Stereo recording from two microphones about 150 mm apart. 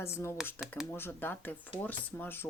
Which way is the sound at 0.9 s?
15° left (ahead or behind).